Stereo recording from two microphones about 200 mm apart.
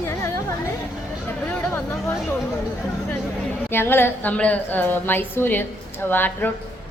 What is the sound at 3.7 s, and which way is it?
A woman's voice, 10° left (ahead or behind).